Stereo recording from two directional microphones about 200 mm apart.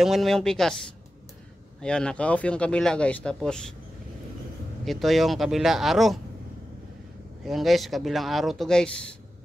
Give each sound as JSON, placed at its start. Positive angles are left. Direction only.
{"t": 0.0, "sound": "speech", "side_deg": 0}
{"t": 1.8, "sound": "speech", "side_deg": 5}
{"t": 4.8, "sound": "speech", "side_deg": 0}
{"t": 7.4, "sound": "speech", "side_deg": 0}